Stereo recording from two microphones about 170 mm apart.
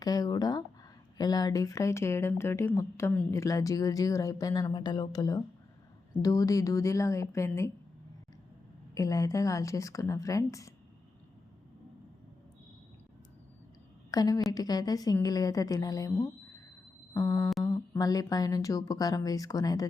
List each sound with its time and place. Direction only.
0.0 s speech: 20° left (ahead or behind)
9.0 s speech: 20° left (ahead or behind)
14.1 s speech: 20° left (ahead or behind)